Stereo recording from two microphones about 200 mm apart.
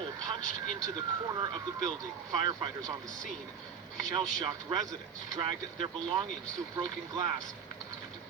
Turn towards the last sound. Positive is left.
turn(degrees=-20)  # may be behind; listen again after turning